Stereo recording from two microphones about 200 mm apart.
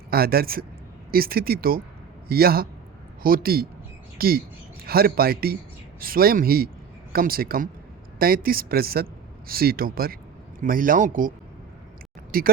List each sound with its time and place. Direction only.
0.1 s a man's voice: 50° right (ahead or behind)
12.3 s speech: 45° right (ahead or behind)